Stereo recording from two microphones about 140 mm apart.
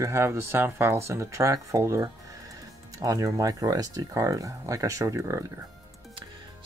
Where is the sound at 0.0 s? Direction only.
20° right (ahead or behind).